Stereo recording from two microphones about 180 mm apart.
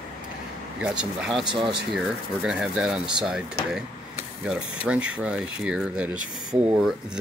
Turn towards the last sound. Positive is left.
turn(degrees=-5)  # may be behind; listen again after turning